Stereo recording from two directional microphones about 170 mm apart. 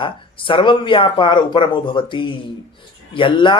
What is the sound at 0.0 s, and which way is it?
Speech, 30° left (ahead or behind).